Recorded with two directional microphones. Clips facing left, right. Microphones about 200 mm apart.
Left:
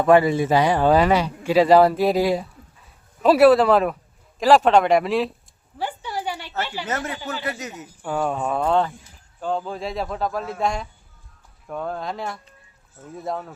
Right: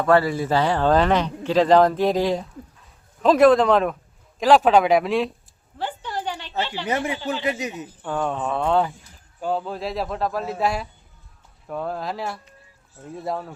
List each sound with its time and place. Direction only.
0.0 s a man's voice: 20° left (ahead or behind); by 5.3 s centre (ahead or behind)
5.7 s a sound: 10° left (ahead or behind)
6.8 s speech: 15° right (ahead or behind)
7.9 s a man's voice: 10° left (ahead or behind)